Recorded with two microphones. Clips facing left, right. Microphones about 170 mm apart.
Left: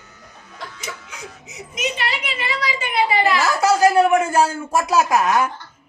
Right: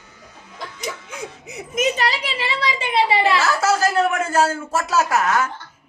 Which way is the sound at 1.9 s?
35° right (ahead or behind).